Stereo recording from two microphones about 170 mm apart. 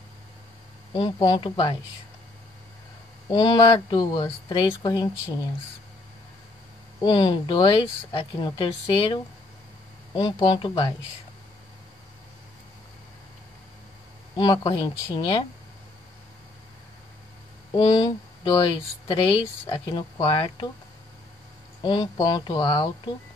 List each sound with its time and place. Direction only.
0.9 s speech: 30° left (ahead or behind)
3.3 s speech: 25° left (ahead or behind)
7.0 s speech: 25° left (ahead or behind)
14.3 s speech: 25° left (ahead or behind)
17.7 s speech: 30° left (ahead or behind)
21.8 s speech: 30° left (ahead or behind)